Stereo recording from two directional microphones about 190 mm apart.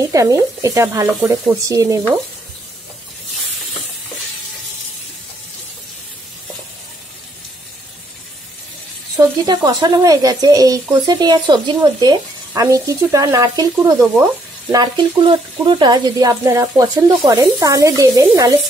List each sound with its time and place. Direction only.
0.1 s speech: 15° right (ahead or behind)
9.5 s speech: 20° right (ahead or behind)